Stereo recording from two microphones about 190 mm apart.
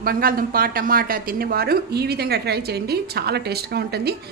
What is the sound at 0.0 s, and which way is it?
A woman's voice, 50° right (ahead or behind).